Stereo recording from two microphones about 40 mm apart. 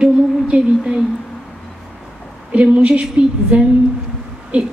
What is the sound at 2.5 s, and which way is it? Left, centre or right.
A woman's voice, right.